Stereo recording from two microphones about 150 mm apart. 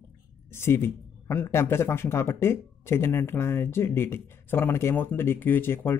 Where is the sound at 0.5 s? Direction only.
15° left (ahead or behind).